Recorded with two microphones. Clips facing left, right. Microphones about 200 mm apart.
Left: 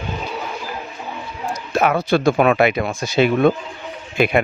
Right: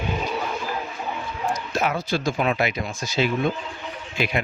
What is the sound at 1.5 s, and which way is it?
A man's voice, 60° left (ahead or behind).